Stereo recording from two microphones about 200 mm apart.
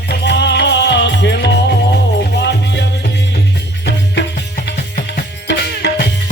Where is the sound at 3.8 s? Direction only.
60° left (ahead or behind).